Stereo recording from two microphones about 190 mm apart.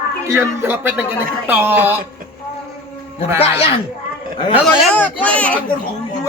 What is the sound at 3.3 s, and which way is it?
Speech, 30° left (ahead or behind).